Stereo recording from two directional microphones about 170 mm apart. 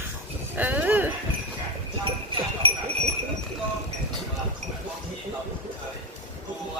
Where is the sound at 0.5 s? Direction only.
10° right (ahead or behind).